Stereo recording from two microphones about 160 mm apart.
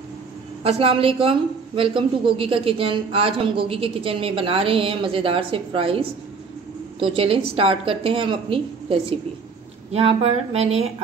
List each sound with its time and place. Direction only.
0.7 s a man's voice: 35° right (ahead or behind)